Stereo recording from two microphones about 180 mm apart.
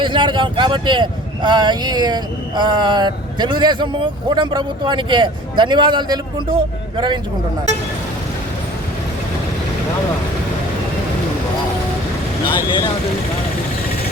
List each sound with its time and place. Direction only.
0.0 s speech: 25° right (ahead or behind)
12.5 s speech: 20° left (ahead or behind)